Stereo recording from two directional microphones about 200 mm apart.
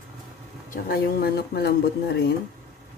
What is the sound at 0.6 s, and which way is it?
Speech, 50° left (ahead or behind).